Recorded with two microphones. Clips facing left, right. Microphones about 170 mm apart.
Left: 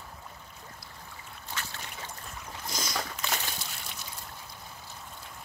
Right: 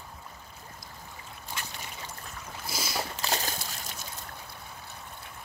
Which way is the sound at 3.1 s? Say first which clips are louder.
Right 3 dB; 35° right (ahead or behind).